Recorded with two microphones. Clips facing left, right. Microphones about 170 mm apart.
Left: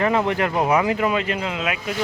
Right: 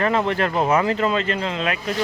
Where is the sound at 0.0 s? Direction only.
15° left (ahead or behind).